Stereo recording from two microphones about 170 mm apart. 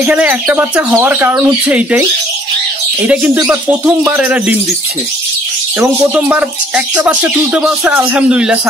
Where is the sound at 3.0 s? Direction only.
5° right (ahead or behind).